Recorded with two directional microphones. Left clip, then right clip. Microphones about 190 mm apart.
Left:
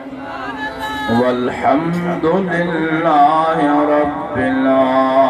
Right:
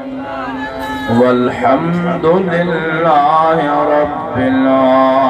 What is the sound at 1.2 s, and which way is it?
Speech, 20° right (ahead or behind).